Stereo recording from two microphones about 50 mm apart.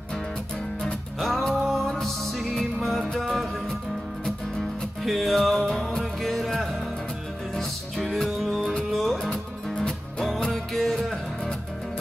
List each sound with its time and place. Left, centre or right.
1.2 s music: centre
5.0 s music: centre